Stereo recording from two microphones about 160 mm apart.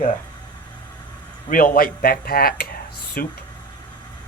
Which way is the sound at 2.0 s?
70° left (ahead or behind).